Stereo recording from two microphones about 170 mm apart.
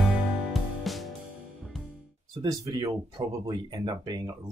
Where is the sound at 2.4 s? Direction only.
20° right (ahead or behind).